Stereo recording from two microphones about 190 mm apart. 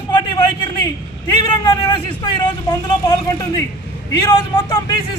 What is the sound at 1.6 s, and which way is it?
Vehicle, 25° left (ahead or behind).